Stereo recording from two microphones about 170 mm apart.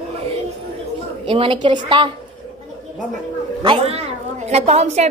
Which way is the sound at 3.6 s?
35° right (ahead or behind).